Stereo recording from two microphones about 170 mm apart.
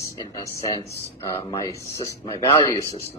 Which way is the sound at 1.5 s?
20° left (ahead or behind).